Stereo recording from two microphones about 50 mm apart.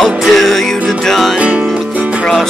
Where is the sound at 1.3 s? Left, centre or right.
Right.